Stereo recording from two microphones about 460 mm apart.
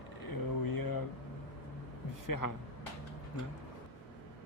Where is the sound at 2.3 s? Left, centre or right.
Left.